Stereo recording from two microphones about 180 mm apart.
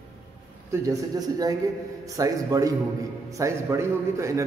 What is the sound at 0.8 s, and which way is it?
A man's voice, 20° right (ahead or behind).